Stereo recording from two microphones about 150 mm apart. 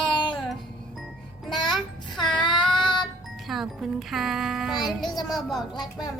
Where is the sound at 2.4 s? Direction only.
30° left (ahead or behind).